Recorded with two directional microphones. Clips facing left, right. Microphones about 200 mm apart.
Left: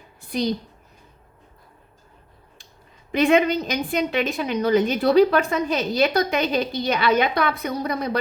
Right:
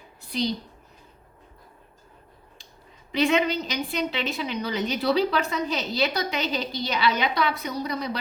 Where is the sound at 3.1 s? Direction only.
55° left (ahead or behind).